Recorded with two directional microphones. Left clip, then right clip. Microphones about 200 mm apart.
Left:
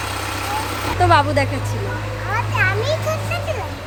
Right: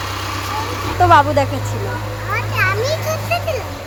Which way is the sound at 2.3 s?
Centre (ahead or behind).